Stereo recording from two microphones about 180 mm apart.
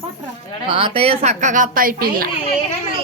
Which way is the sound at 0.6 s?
30° right (ahead or behind).